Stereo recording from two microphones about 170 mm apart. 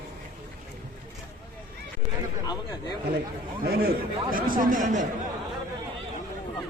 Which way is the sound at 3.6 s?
65° right (ahead or behind).